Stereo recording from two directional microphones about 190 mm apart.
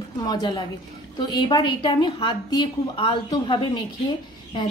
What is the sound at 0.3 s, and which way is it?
A woman's voice, 25° left (ahead or behind).